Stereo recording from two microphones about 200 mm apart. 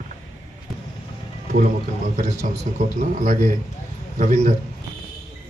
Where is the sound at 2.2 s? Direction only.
40° right (ahead or behind).